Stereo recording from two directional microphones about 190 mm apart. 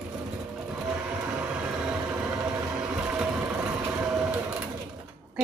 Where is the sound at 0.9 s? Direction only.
10° right (ahead or behind).